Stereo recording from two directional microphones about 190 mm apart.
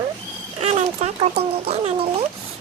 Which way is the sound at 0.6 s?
35° right (ahead or behind).